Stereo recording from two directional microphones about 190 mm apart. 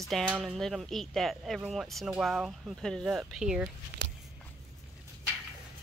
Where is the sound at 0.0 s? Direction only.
Centre (ahead or behind).